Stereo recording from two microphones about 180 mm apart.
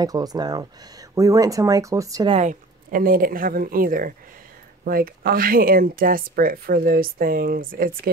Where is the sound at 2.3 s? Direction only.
45° right (ahead or behind).